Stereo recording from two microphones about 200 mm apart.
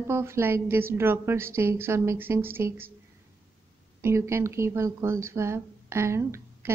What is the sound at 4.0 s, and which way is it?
Speech, 15° right (ahead or behind).